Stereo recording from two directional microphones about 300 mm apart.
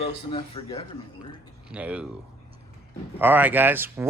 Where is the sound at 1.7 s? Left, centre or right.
Centre.